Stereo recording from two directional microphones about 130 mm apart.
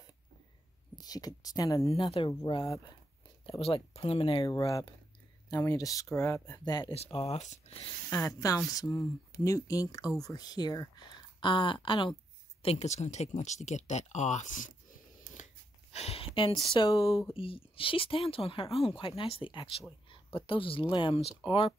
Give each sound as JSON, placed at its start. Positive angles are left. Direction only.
{"t": 0.9, "sound": "speech", "side_deg": 30}
{"t": 1.9, "sound": "a woman's voice", "side_deg": 45}
{"t": 4.5, "sound": "speech", "side_deg": 25}
{"t": 7.0, "sound": "a woman's voice", "side_deg": 50}
{"t": 7.3, "sound": "speech", "side_deg": 60}
{"t": 8.1, "sound": "speech", "side_deg": 25}
{"t": 12.6, "sound": "speech", "side_deg": 60}
{"t": 16.5, "sound": "speech", "side_deg": 30}
{"t": 17.3, "sound": "a woman's voice", "side_deg": 45}